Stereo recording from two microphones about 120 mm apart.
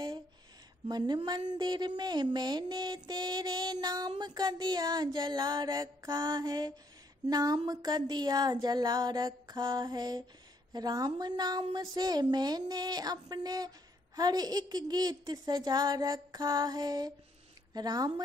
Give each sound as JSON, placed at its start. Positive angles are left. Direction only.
{"t": 0.8, "sound": "a woman's voice", "side_deg": -40}